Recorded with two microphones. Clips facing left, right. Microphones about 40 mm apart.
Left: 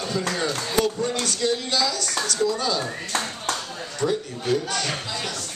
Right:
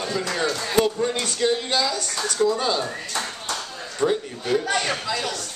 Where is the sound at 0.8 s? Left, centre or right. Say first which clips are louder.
Right 1 dB; right.